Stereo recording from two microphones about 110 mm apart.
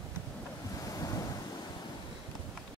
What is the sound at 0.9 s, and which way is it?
Waves, 30° left (ahead or behind).